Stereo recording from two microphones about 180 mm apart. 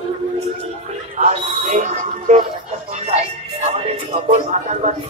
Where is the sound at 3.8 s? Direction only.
35° right (ahead or behind).